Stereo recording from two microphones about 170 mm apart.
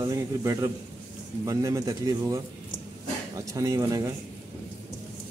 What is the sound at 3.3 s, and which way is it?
Speech, 20° right (ahead or behind).